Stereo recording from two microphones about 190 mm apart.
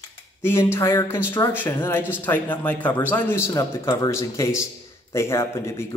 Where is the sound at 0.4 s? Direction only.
10° left (ahead or behind).